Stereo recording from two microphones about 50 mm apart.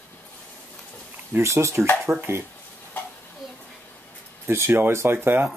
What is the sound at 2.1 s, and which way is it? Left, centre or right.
Speech, right.